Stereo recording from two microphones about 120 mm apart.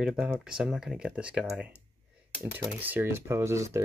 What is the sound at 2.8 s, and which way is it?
Speech, 15° right (ahead or behind).